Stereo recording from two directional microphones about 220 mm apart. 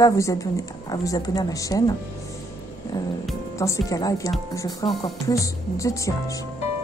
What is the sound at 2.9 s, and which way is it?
A woman's voice, 20° left (ahead or behind).